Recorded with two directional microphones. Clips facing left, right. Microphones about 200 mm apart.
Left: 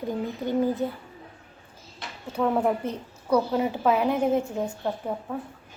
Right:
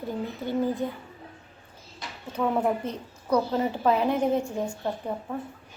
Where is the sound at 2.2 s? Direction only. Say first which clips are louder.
Left 2 dB; 5° left (ahead or behind).